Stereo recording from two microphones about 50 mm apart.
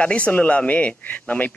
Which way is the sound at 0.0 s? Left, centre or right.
Left.